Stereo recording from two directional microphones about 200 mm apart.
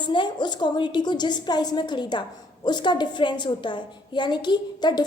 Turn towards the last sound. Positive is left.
turn(degrees=20)  # may be behind; listen again after turning